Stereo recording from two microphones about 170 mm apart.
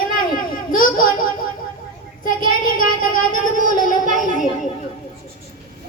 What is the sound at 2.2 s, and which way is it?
Child singing, 55° left (ahead or behind).